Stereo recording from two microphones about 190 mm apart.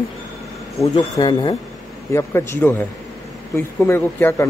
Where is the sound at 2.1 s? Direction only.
15° left (ahead or behind).